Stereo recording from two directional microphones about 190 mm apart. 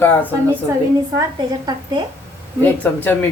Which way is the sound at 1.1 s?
20° right (ahead or behind).